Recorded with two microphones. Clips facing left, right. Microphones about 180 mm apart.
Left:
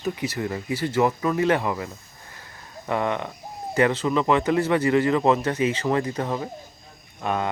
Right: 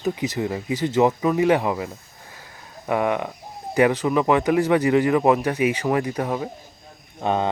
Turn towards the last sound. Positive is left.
turn(degrees=-25)  # may be behind; listen again after turning